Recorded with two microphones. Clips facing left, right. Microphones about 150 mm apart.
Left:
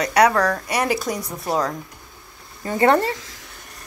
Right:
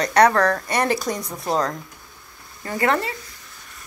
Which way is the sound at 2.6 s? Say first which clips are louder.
Left 5 dB; 20° left (ahead or behind).